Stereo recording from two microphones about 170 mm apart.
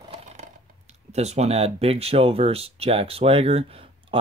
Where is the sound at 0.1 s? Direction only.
40° right (ahead or behind).